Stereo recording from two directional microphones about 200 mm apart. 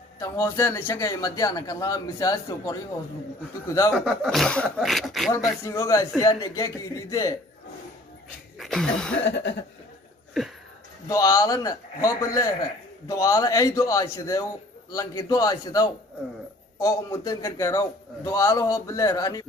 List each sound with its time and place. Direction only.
0.2 s a man's voice: 15° left (ahead or behind)
3.9 s speech: centre (ahead or behind)
5.6 s a man's voice: 15° left (ahead or behind)
8.5 s a sound: centre (ahead or behind)
9.2 s a sound: 60° left (ahead or behind)
11.1 s a man's voice: 15° left (ahead or behind)